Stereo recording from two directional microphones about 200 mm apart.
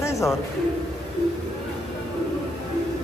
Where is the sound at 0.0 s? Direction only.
15° left (ahead or behind).